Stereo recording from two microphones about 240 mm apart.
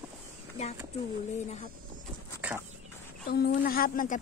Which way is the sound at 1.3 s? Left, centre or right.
Left.